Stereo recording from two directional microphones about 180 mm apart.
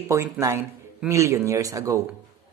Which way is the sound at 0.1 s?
15° right (ahead or behind).